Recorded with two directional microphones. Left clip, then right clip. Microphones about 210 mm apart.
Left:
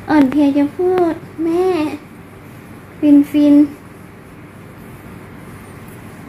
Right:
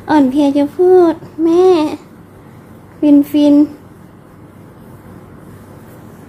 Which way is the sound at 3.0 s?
60° right (ahead or behind).